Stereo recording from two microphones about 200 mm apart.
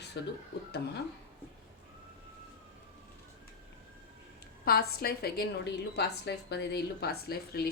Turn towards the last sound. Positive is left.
turn(degrees=50)  # may be behind; listen again after turning